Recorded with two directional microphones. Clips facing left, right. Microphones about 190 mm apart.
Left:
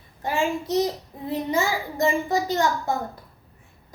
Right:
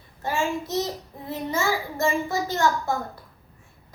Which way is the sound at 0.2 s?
15° left (ahead or behind).